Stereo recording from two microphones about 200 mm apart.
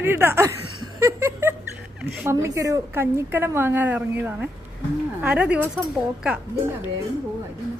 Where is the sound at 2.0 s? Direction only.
5° right (ahead or behind).